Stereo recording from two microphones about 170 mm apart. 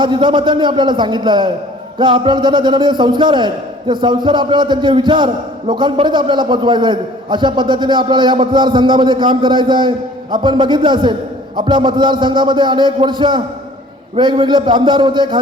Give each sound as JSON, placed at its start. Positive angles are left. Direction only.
{"t": 0.0, "sound": "a man's voice", "side_deg": -25}